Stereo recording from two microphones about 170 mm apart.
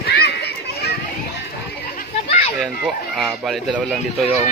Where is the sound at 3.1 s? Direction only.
Centre (ahead or behind).